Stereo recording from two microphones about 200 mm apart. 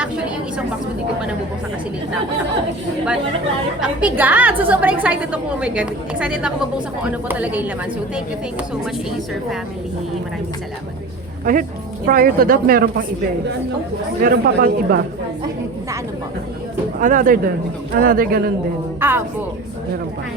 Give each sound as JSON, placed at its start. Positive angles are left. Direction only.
{"t": 3.8, "sound": "a woman's voice", "side_deg": -5}
{"t": 11.5, "sound": "speech", "side_deg": -40}
{"t": 14.2, "sound": "speech", "side_deg": -45}
{"t": 17.0, "sound": "speech", "side_deg": -40}
{"t": 18.9, "sound": "a woman's voice", "side_deg": -10}